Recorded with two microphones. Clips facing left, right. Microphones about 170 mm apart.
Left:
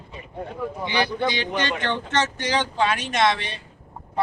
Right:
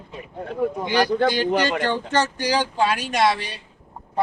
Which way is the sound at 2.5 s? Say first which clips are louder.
Right 1 dB; 5° right (ahead or behind).